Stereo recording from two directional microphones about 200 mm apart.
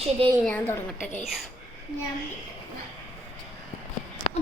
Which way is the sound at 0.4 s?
10° left (ahead or behind).